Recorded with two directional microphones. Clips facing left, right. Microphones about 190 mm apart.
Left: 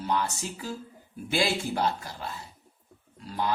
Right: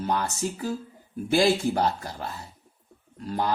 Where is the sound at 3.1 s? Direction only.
45° right (ahead or behind).